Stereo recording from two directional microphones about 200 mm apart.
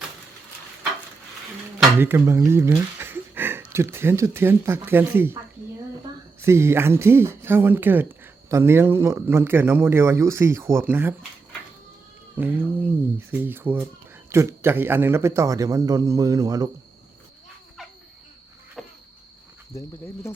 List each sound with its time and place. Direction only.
2.0 s speech: 10° right (ahead or behind)
6.4 s speech: 15° right (ahead or behind)
12.4 s speech: 10° right (ahead or behind)
18.8 s a sound: centre (ahead or behind)
19.7 s cricket: 15° left (ahead or behind)